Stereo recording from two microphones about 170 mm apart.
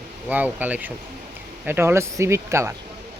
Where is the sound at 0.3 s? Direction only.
10° right (ahead or behind).